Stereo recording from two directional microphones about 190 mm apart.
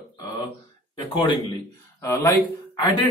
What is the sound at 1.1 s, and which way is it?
Speech, 25° left (ahead or behind).